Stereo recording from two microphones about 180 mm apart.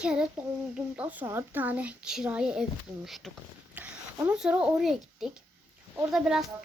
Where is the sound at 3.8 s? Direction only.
10° right (ahead or behind).